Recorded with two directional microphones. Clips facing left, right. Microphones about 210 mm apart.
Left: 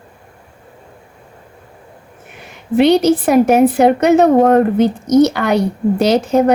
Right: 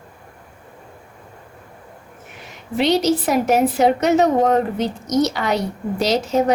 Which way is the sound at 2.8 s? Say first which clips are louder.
Left 6 dB; 55° left (ahead or behind).